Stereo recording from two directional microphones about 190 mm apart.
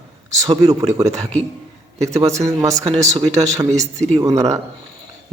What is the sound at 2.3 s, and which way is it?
Speech, 15° right (ahead or behind).